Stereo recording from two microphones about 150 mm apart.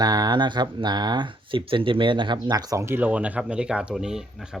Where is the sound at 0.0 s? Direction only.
25° right (ahead or behind).